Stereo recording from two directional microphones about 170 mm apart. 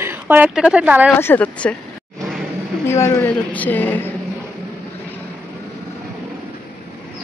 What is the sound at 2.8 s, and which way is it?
Speech, 15° left (ahead or behind).